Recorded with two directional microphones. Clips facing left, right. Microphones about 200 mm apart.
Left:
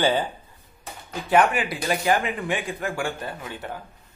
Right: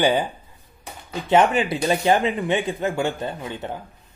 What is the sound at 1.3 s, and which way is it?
A man's voice, 25° right (ahead or behind).